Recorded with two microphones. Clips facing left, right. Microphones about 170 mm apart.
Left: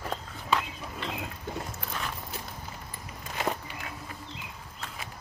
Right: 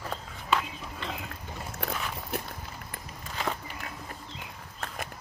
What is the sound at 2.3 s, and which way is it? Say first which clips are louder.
Walk: right 6 dB; 60° right (ahead or behind).